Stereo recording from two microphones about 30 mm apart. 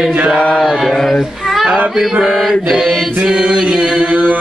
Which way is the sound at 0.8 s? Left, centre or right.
Centre.